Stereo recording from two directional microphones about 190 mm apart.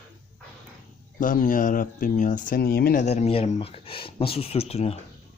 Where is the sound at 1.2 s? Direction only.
45° left (ahead or behind).